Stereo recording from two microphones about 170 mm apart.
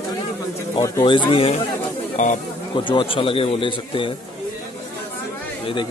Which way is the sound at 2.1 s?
45° left (ahead or behind).